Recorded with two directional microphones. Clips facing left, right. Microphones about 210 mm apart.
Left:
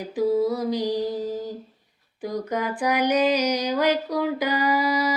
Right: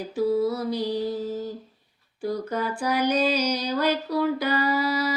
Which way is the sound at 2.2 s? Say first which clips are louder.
Even; 15° left (ahead or behind).